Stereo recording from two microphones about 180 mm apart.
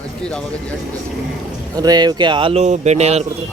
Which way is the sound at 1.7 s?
20° right (ahead or behind).